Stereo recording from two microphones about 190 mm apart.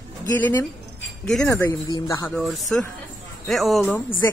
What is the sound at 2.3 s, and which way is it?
Speech, centre (ahead or behind).